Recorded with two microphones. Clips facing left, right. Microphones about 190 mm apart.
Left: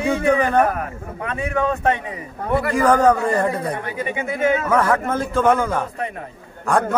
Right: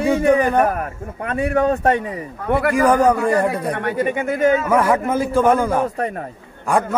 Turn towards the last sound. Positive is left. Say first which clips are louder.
# even
turn(degrees=-5)  # may be behind; listen again after turning